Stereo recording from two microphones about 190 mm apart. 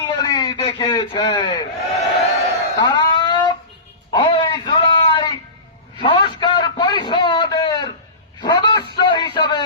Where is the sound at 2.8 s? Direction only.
25° left (ahead or behind).